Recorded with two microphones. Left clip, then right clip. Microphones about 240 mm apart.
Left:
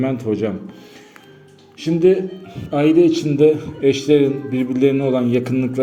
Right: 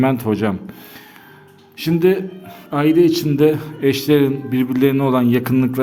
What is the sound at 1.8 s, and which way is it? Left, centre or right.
A man's voice, right.